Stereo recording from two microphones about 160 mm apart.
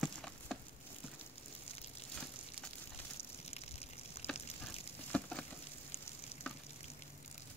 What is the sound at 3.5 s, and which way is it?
Gush, 40° left (ahead or behind).